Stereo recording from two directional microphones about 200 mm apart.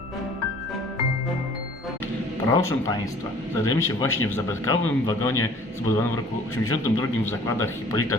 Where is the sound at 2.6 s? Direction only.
15° left (ahead or behind).